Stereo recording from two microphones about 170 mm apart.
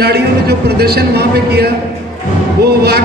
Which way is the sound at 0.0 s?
70° right (ahead or behind).